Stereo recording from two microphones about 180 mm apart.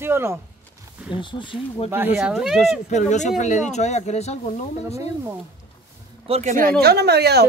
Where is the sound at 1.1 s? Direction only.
25° left (ahead or behind).